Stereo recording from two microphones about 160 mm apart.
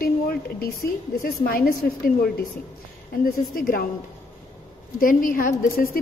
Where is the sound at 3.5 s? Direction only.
65° left (ahead or behind).